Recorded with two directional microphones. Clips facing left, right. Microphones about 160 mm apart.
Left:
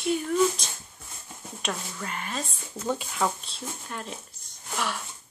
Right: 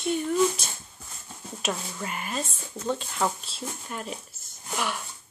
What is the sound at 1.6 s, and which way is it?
Speech, 10° right (ahead or behind).